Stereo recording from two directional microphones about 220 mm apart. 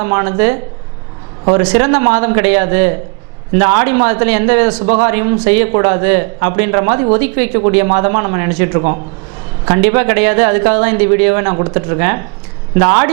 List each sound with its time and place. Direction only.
0.0 s a woman's voice: 20° right (ahead or behind)
7.5 s speech: 25° right (ahead or behind)